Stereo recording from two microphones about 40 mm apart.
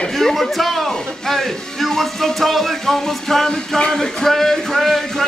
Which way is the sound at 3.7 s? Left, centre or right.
Centre.